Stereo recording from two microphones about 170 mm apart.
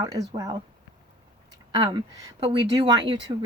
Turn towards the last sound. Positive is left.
turn(degrees=-30)  # may be behind; listen again after turning